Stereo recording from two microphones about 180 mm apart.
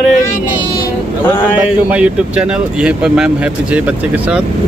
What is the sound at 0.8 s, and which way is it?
Vehicle, 15° left (ahead or behind).